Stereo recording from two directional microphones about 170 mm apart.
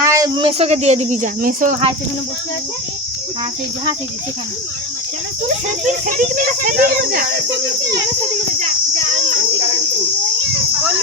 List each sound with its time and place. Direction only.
0.0 s a sound: 20° right (ahead or behind)
0.7 s speech: 40° right (ahead or behind)
5.6 s speech: 50° right (ahead or behind)